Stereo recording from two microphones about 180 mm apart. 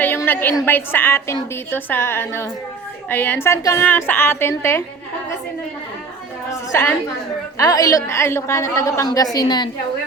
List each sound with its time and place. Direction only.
0.0 s a woman's voice: 10° left (ahead or behind)
6.5 s a woman's voice: 20° left (ahead or behind)